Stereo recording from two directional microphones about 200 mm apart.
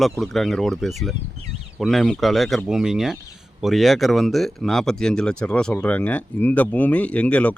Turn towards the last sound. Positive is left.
turn(degrees=5)  # may be behind; listen again after turning